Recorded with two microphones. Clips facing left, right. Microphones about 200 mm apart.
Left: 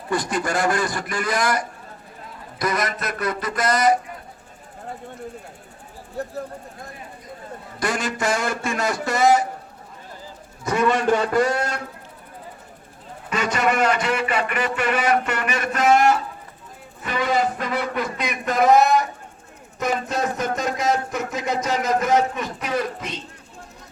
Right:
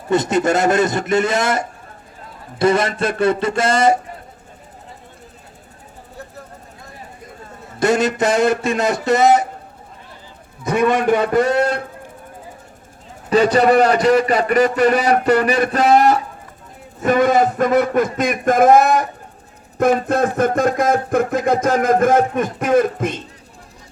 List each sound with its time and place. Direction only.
0.1 s a man's voice: 25° right (ahead or behind)
7.8 s a man's voice: 25° right (ahead or behind)
10.7 s a man's voice: 20° right (ahead or behind)
13.3 s a man's voice: 35° right (ahead or behind)
17.0 s speech: 50° right (ahead or behind)